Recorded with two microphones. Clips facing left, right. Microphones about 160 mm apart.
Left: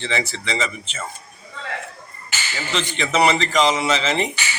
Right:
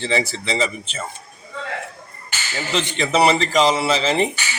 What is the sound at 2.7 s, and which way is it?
A man's voice, 35° right (ahead or behind).